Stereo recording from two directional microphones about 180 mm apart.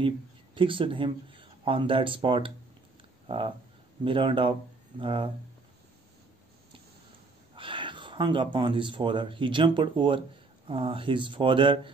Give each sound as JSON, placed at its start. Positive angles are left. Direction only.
{"t": 0.6, "sound": "speech", "side_deg": -30}
{"t": 7.5, "sound": "speech", "side_deg": -30}